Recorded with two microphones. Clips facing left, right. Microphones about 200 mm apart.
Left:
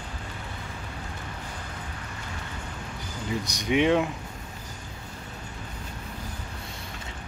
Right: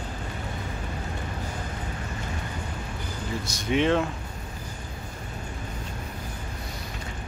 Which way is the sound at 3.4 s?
15° left (ahead or behind).